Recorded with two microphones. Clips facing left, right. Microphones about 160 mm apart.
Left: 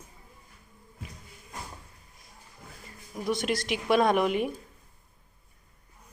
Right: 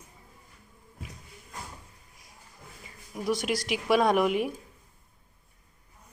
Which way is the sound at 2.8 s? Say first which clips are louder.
Right 1 dB; 5° right (ahead or behind).